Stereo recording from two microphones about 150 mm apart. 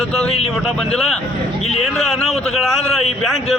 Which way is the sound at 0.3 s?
40° left (ahead or behind).